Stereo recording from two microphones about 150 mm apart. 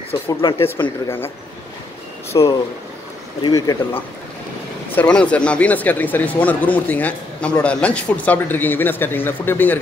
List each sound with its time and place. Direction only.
0.3 s speech: 30° left (ahead or behind)
0.6 s speech: 15° left (ahead or behind)
2.3 s speech: 30° left (ahead or behind)
4.9 s speech: 5° left (ahead or behind)